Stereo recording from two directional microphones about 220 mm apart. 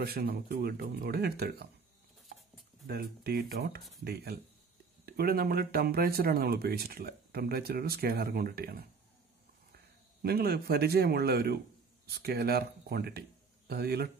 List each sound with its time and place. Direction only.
0.0 s speech: 45° right (ahead or behind)
2.9 s speech: 45° right (ahead or behind)
10.2 s speech: 45° right (ahead or behind)